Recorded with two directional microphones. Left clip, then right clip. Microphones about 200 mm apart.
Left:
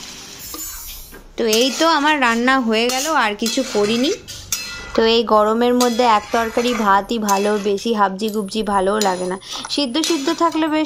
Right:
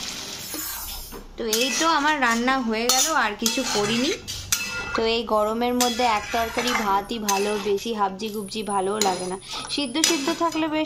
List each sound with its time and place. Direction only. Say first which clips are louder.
1.4 s speech: left 7 dB; 35° left (ahead or behind)